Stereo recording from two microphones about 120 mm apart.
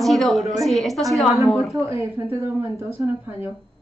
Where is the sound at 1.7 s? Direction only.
25° right (ahead or behind).